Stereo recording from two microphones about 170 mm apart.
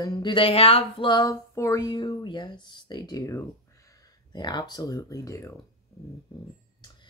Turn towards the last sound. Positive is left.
turn(degrees=25)  # may be behind; listen again after turning